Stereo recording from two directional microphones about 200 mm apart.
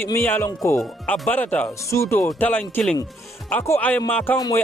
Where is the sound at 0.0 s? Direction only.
10° left (ahead or behind).